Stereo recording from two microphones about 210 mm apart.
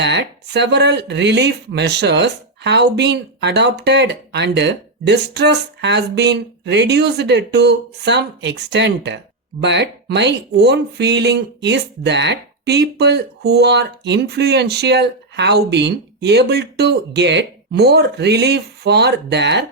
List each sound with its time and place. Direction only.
0.0 s speech: 55° right (ahead or behind)